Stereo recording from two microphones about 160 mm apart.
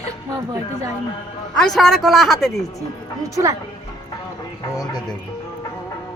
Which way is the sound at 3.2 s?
20° right (ahead or behind).